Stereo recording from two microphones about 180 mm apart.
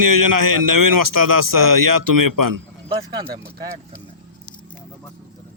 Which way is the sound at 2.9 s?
20° right (ahead or behind).